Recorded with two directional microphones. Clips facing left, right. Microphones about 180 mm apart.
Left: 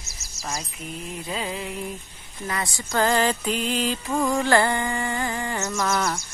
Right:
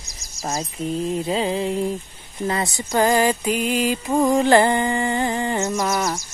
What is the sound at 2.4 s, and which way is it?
Mantra, 25° right (ahead or behind).